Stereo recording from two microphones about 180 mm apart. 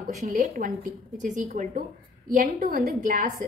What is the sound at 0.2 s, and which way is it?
A woman's voice, 45° right (ahead or behind).